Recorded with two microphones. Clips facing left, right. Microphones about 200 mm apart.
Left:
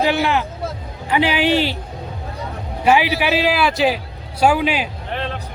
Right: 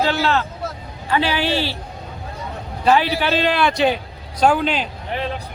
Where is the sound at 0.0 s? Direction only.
15° left (ahead or behind).